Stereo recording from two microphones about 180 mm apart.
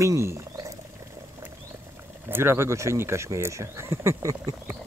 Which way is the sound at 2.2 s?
15° right (ahead or behind).